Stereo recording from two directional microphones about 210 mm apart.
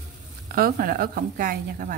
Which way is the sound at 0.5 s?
45° right (ahead or behind).